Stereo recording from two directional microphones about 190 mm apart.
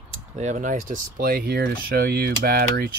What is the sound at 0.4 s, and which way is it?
Speech, 40° right (ahead or behind).